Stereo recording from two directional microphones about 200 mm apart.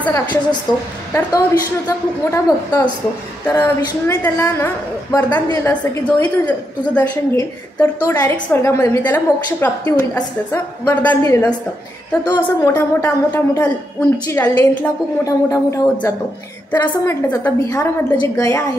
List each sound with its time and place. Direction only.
0.0 s a woman's voice: 10° left (ahead or behind)
0.7 s a woman's voice: 20° left (ahead or behind)
1.9 s a woman's voice: 15° left (ahead or behind)